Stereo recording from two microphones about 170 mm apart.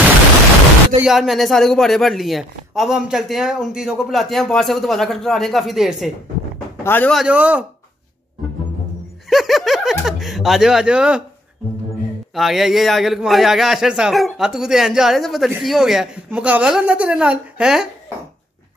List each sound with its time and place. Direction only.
1.0 s a man's voice: centre (ahead or behind)
6.8 s speech: 10° left (ahead or behind)
7.2 s a man's voice: 10° right (ahead or behind)
9.3 s a man's voice: centre (ahead or behind)
12.4 s a man's voice: centre (ahead or behind)